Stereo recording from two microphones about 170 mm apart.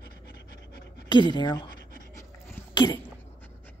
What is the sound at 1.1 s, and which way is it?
Speech, 25° left (ahead or behind).